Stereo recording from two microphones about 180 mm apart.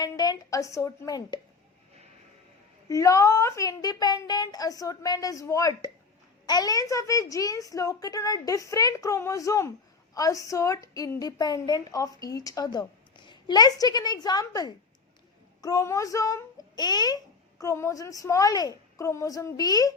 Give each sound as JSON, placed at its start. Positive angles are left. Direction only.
{"t": 0.0, "sound": "a woman's voice", "side_deg": 20}
{"t": 2.9, "sound": "a woman's voice", "side_deg": 15}